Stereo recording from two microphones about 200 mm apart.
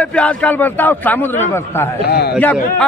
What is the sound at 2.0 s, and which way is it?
Speech, 55° left (ahead or behind).